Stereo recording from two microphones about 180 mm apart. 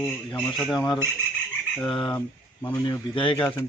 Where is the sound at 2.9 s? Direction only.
30° left (ahead or behind).